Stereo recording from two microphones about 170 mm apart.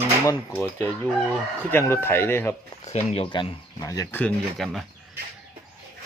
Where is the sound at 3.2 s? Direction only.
25° left (ahead or behind); by 4.9 s centre (ahead or behind).